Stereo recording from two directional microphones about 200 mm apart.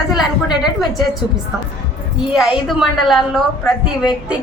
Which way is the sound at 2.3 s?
Centre (ahead or behind).